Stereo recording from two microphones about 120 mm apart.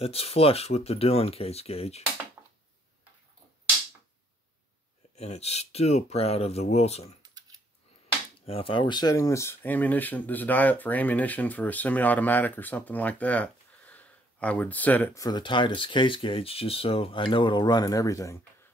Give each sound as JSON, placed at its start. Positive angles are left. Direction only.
{"t": 0.0, "sound": "speech", "side_deg": 55}
{"t": 5.1, "sound": "speech", "side_deg": 65}
{"t": 8.5, "sound": "speech", "side_deg": 50}
{"t": 15.1, "sound": "speech", "side_deg": 35}